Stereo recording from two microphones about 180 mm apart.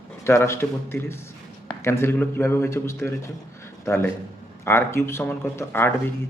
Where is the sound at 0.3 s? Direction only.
15° left (ahead or behind).